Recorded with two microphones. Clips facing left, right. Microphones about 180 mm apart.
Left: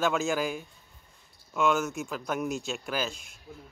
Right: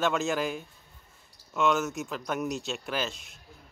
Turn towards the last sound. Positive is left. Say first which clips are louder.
# even
turn(degrees=0)  # may be behind; listen again after turning